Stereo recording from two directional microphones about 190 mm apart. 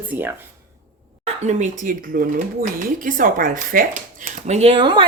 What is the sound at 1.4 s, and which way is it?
Speech, 35° right (ahead or behind).